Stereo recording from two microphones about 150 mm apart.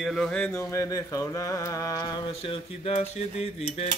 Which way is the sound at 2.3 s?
40° left (ahead or behind).